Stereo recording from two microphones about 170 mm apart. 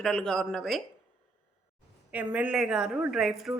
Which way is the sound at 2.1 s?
10° right (ahead or behind).